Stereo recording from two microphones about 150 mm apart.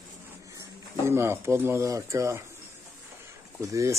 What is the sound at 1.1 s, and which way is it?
Speech, 15° right (ahead or behind).